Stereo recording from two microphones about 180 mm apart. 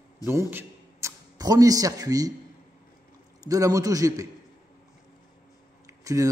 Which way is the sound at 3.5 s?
20° right (ahead or behind).